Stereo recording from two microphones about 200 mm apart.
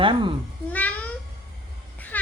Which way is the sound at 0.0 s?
25° right (ahead or behind).